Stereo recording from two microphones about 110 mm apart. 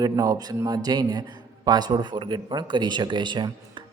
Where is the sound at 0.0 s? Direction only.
35° right (ahead or behind).